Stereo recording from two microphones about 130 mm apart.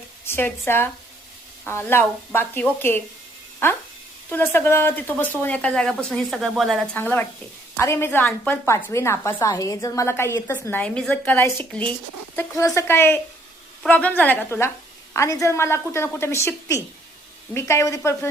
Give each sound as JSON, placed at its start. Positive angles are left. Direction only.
{"t": 0.3, "sound": "speech", "side_deg": 15}
{"t": 4.3, "sound": "speech", "side_deg": 15}
{"t": 6.9, "sound": "a woman's voice", "side_deg": 15}
{"t": 12.4, "sound": "a woman's voice", "side_deg": 20}